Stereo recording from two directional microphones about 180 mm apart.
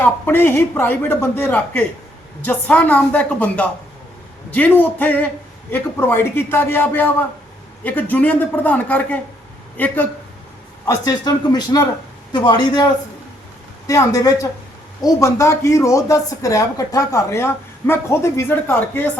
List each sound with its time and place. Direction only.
0.0 s speech: 10° left (ahead or behind)
10.8 s speech: 20° left (ahead or behind)